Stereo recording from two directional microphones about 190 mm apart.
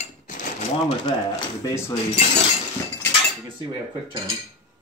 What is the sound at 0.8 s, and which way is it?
Speech, 20° left (ahead or behind).